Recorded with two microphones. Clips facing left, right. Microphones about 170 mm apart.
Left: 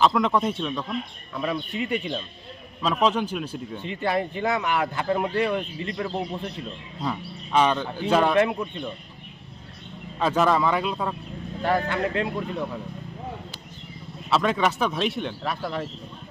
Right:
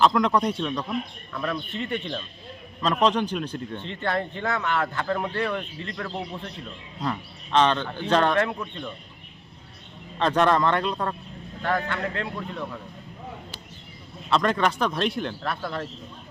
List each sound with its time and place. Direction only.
0.0 s speech: centre (ahead or behind)
10.2 s speech: 5° left (ahead or behind)
11.6 s speech: 15° left (ahead or behind)
14.3 s speech: 5° left (ahead or behind)